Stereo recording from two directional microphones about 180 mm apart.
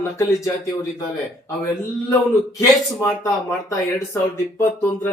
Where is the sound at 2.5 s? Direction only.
15° left (ahead or behind).